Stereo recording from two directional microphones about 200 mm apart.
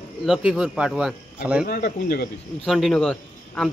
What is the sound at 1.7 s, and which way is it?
Speech, 50° left (ahead or behind).